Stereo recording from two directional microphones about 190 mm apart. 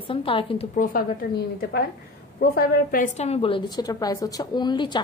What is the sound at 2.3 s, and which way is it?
A woman's voice, 50° left (ahead or behind).